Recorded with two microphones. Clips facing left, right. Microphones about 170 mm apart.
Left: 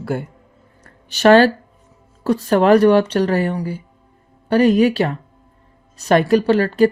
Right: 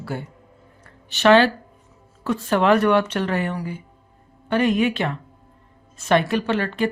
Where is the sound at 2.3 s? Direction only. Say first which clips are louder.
Left 5 dB; 40° left (ahead or behind).